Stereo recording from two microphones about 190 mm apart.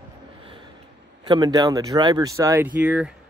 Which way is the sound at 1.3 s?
20° right (ahead or behind).